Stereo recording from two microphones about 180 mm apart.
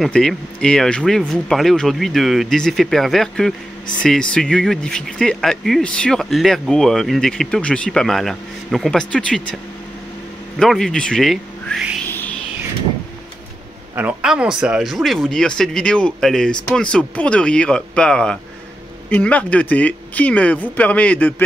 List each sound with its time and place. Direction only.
0.0 s speech: centre (ahead or behind)
10.6 s speech: 5° left (ahead or behind)
12.1 s music: 10° left (ahead or behind)
13.9 s speech: 5° right (ahead or behind)